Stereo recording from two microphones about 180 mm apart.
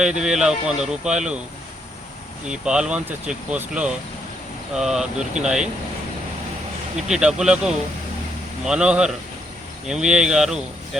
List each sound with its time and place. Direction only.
0.0 s speech: 5° right (ahead or behind)
2.5 s speech: 5° right (ahead or behind)
7.1 s speech: 5° right (ahead or behind)